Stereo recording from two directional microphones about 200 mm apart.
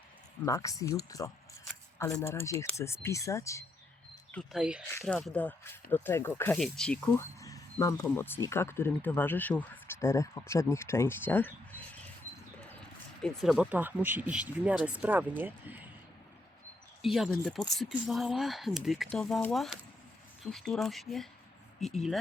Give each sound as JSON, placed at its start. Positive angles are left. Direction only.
{"t": 0.4, "sound": "speech", "side_deg": 15}
{"t": 7.0, "sound": "speech", "side_deg": 15}
{"t": 13.2, "sound": "speech", "side_deg": 0}
{"t": 17.0, "sound": "speech", "side_deg": 0}